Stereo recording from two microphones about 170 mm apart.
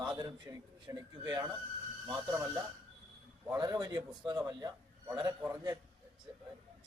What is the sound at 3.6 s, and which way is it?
A man's voice, 25° right (ahead or behind).